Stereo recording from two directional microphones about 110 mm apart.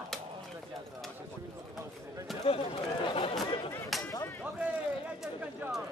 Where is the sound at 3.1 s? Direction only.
55° left (ahead or behind).